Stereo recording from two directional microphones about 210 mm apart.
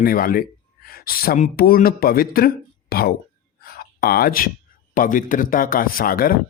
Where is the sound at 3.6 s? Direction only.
45° left (ahead or behind).